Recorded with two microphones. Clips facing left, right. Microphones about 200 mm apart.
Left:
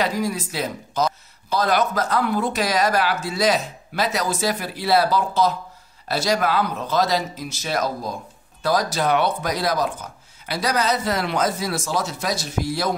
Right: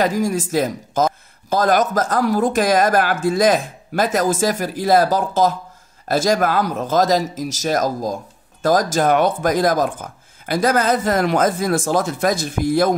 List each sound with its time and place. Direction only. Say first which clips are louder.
0.0 s speech: right 5 dB; 45° right (ahead or behind)